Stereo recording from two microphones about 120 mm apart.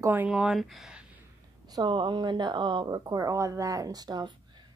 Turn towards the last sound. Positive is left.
turn(degrees=-35)  # may be behind; listen again after turning